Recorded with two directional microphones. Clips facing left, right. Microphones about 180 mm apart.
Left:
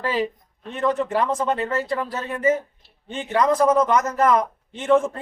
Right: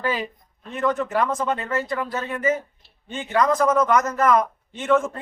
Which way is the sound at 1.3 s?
15° left (ahead or behind).